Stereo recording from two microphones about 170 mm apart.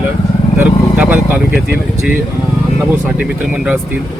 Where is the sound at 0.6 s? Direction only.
10° right (ahead or behind).